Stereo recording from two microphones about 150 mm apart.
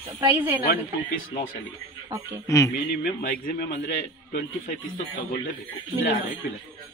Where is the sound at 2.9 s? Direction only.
90° left.